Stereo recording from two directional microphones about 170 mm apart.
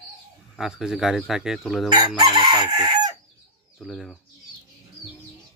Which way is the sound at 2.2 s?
25° right (ahead or behind).